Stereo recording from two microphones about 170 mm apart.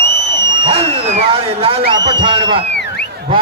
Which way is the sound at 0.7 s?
40° right (ahead or behind).